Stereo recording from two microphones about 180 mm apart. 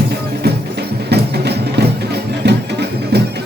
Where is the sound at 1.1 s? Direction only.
65° right (ahead or behind).